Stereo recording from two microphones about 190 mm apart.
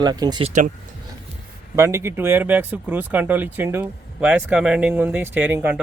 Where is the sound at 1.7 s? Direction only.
15° right (ahead or behind).